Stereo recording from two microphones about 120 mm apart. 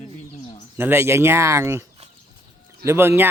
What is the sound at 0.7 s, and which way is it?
Speech, 20° right (ahead or behind).